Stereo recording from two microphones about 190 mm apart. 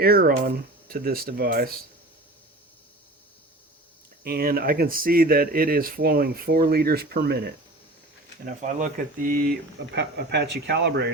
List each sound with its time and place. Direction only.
0.0 s speech: 50° right (ahead or behind)
4.2 s speech: 55° right (ahead or behind)
8.6 s speech: 45° right (ahead or behind)
9.9 s speech: 60° right (ahead or behind)